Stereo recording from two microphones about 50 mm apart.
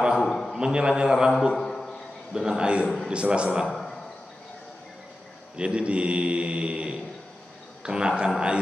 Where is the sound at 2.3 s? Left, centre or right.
Centre.